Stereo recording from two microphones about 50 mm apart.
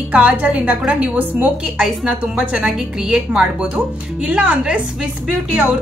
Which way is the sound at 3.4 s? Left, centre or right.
Right.